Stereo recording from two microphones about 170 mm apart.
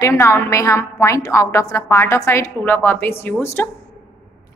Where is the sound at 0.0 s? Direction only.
15° left (ahead or behind).